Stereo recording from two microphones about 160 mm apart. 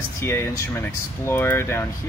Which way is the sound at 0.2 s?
15° left (ahead or behind).